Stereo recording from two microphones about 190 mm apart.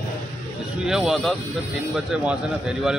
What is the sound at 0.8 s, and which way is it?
A man's voice, centre (ahead or behind).